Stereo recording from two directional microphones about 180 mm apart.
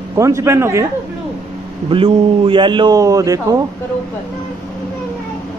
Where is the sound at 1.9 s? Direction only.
30° right (ahead or behind).